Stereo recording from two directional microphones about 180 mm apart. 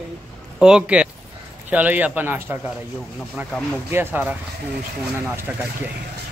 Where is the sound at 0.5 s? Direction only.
5° right (ahead or behind).